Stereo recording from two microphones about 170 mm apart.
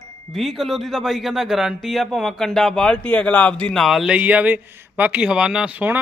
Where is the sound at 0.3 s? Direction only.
Centre (ahead or behind).